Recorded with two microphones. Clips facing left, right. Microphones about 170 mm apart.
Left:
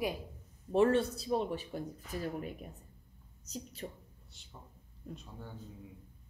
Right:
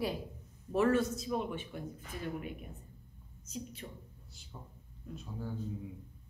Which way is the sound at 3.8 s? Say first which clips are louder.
Left 4 dB; 35° left (ahead or behind).